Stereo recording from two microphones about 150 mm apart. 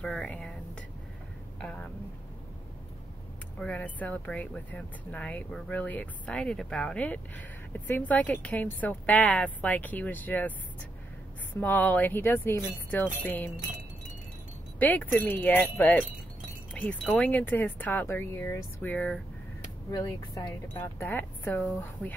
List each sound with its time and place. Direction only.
0.0 s speech: 5° left (ahead or behind)
1.6 s speech: 5° left (ahead or behind)
3.5 s speech: 10° left (ahead or behind)
11.6 s speech: 10° left (ahead or behind)
14.8 s speech: 10° left (ahead or behind)
16.8 s chime: 10° left (ahead or behind)
17.1 s speech: 10° left (ahead or behind)
19.9 s speech: 20° left (ahead or behind)